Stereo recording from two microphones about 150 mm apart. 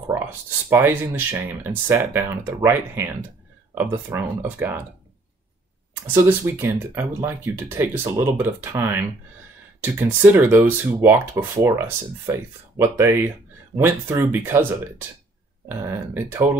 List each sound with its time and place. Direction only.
0.7 s speech: 15° right (ahead or behind)
6.0 s speech: 15° right (ahead or behind)